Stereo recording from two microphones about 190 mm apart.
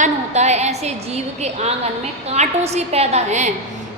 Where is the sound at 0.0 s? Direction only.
35° right (ahead or behind).